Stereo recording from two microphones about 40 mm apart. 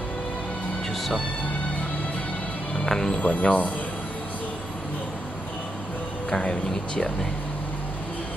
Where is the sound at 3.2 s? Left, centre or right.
Left.